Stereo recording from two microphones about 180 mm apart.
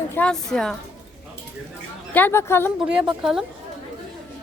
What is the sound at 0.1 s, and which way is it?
Speech, 5° left (ahead or behind).